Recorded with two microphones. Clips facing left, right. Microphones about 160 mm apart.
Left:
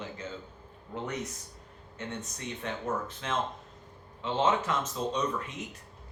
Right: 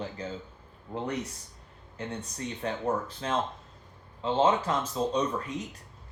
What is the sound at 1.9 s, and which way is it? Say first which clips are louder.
Speech: right 2 dB; 35° right (ahead or behind).